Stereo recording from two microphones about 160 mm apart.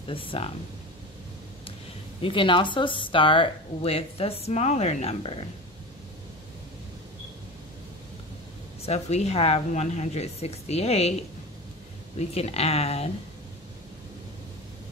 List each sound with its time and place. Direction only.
0.1 s speech: 35° left (ahead or behind)
2.2 s speech: 30° left (ahead or behind)
8.8 s speech: 40° left (ahead or behind)
12.2 s speech: 40° left (ahead or behind)